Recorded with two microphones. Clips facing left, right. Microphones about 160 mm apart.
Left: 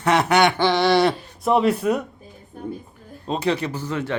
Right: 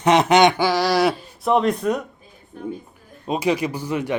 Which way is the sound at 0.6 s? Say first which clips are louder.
Left 1 dB; centre (ahead or behind).